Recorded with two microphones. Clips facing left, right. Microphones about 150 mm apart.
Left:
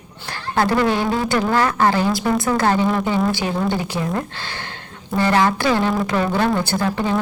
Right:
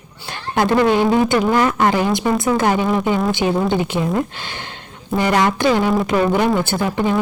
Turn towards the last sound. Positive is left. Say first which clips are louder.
# right 2 dB
turn(degrees=-15)  # may be behind; listen again after turning